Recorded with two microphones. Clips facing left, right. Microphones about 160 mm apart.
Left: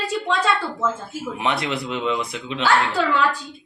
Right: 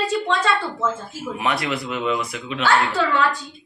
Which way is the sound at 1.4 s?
25° left (ahead or behind).